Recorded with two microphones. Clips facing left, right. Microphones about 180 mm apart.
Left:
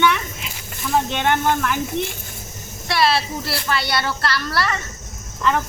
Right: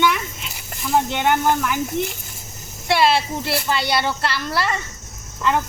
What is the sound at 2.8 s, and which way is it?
Speech, 20° right (ahead or behind).